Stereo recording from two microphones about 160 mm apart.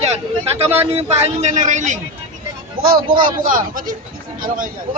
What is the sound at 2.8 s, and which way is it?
A man's voice, 65° right (ahead or behind).